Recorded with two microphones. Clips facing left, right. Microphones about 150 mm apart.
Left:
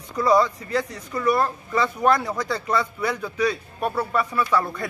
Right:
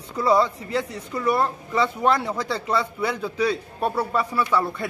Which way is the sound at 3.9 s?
10° right (ahead or behind).